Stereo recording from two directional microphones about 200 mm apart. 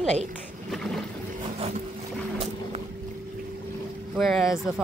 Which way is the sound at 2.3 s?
35° right (ahead or behind).